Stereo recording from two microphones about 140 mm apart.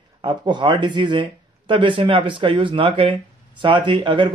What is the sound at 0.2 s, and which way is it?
Speech, 35° right (ahead or behind).